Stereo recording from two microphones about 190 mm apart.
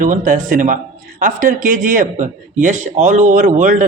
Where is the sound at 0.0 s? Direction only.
45° right (ahead or behind).